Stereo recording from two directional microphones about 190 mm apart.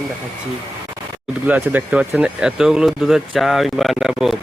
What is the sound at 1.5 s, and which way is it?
Speech, 5° right (ahead or behind).